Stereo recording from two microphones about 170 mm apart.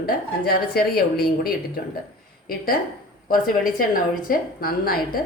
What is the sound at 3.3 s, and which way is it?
Speech, 55° left (ahead or behind).